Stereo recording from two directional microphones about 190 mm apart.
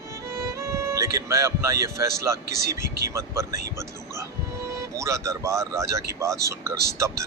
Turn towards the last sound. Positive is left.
turn(degrees=-15)  # may be behind; listen again after turning